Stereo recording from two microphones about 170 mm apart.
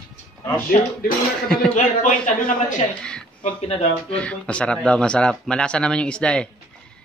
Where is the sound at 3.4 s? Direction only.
40° left (ahead or behind).